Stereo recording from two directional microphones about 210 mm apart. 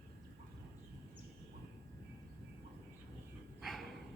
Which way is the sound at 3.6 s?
Centre (ahead or behind).